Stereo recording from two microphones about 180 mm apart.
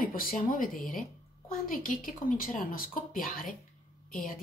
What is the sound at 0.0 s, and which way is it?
Speech, 50° left (ahead or behind).